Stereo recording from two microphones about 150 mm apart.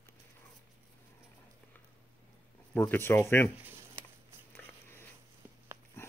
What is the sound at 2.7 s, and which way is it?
Speech, 10° left (ahead or behind).